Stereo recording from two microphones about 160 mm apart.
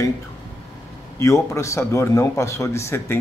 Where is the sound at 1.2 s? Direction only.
20° left (ahead or behind).